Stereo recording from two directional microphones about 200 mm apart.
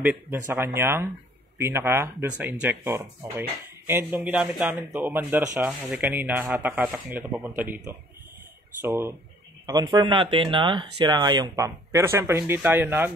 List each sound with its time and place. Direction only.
0.5 s speech: 10° right (ahead or behind)